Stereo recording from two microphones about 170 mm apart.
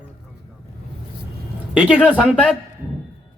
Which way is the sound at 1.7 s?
10° right (ahead or behind).